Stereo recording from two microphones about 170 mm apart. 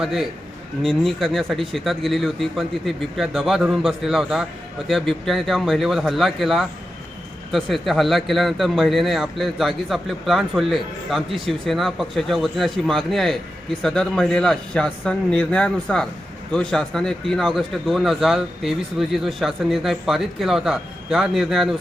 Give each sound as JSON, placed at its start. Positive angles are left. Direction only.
{"t": 0.0, "sound": "speech", "side_deg": 0}